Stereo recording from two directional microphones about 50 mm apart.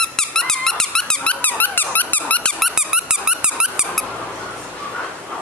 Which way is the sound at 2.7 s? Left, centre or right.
Centre.